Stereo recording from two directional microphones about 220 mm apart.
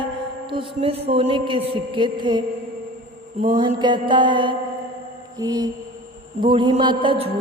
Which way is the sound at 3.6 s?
20° right (ahead or behind).